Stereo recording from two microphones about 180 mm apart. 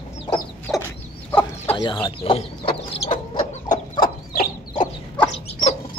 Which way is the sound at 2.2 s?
30° left (ahead or behind).